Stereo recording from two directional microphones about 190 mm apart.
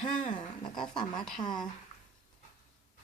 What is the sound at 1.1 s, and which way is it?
Speech, centre (ahead or behind).